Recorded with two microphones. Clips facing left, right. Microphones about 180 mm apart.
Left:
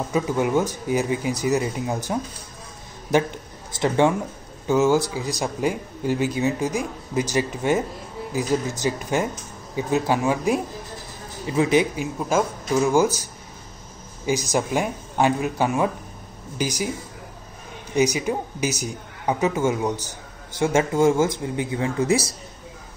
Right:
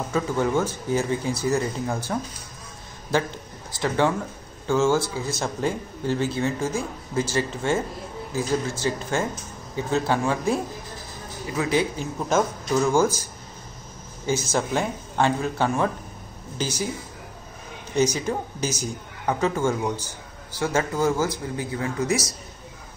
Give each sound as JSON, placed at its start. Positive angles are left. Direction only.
{"t": 0.1, "sound": "speech", "side_deg": 15}
{"t": 14.2, "sound": "speech", "side_deg": 15}
{"t": 17.9, "sound": "speech", "side_deg": 15}